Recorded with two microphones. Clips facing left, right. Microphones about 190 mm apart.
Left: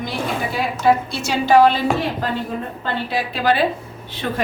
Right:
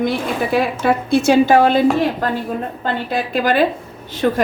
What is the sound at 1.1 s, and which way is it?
A woman's voice, 55° right (ahead or behind).